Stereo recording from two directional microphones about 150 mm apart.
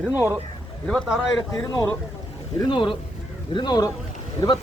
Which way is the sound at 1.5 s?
20° left (ahead or behind).